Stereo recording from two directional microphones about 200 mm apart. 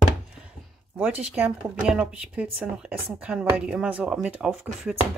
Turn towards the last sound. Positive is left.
turn(degrees=-5)  # may be behind; listen again after turning